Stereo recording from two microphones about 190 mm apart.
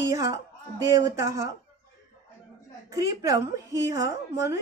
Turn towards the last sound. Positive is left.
turn(degrees=-20)  # may be behind; listen again after turning